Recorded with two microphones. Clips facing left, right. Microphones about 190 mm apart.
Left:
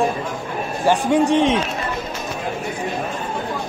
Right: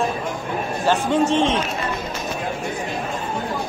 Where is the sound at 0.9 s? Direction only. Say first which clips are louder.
Left 3 dB; 15° left (ahead or behind).